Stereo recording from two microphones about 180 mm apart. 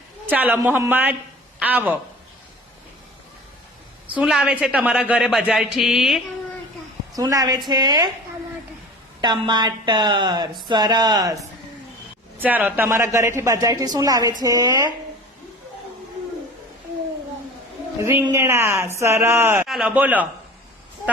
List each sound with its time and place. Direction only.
0.3 s a woman's voice: 10° right (ahead or behind)
4.1 s a woman's voice: 5° right (ahead or behind)
7.2 s a woman's voice: 20° right (ahead or behind)
9.2 s a woman's voice: 25° right (ahead or behind)
12.4 s a woman's voice: 10° right (ahead or behind)
18.0 s speech: 10° right (ahead or behind)